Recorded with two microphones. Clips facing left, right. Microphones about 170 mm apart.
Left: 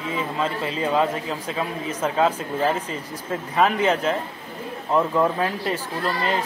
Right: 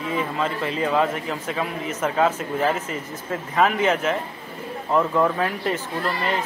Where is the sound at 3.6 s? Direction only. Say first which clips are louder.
Even; 25° left (ahead or behind).